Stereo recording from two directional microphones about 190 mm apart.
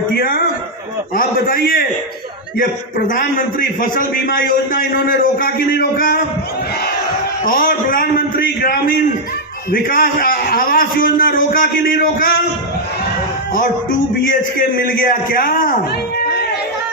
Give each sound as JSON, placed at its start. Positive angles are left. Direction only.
{"t": 1.1, "sound": "a man's voice", "side_deg": 50}
{"t": 3.0, "sound": "a man's voice", "side_deg": 55}
{"t": 7.4, "sound": "a man's voice", "side_deg": 50}
{"t": 14.2, "sound": "a man's voice", "side_deg": 50}